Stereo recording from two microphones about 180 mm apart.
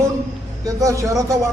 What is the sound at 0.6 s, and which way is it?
Speech, 20° right (ahead or behind).